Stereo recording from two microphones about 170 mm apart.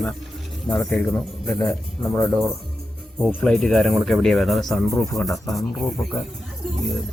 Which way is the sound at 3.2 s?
Centre (ahead or behind).